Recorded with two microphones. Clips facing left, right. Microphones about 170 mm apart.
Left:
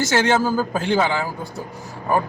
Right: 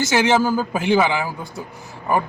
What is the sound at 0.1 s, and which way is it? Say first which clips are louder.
A man's voice: right 3 dB; 15° right (ahead or behind).